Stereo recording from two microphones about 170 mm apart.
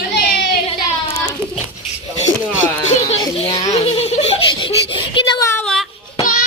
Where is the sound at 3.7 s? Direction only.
40° left (ahead or behind).